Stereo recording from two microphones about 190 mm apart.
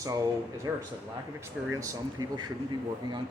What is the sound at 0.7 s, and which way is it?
Speech, 15° right (ahead or behind).